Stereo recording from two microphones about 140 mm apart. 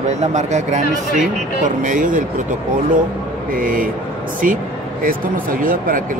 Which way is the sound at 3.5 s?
75° right (ahead or behind).